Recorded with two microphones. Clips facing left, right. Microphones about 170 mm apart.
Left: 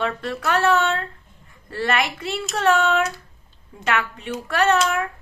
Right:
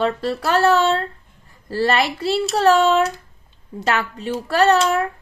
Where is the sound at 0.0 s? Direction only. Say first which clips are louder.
Right 4 dB; 35° right (ahead or behind).